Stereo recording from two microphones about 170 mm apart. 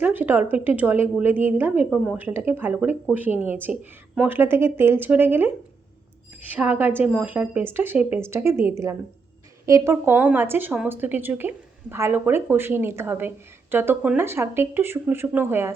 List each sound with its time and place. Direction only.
0.0 s a woman's voice: 10° right (ahead or behind)
6.5 s a woman's voice: 10° right (ahead or behind)